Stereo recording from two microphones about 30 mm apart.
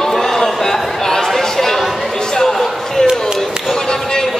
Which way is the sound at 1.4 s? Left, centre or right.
Centre.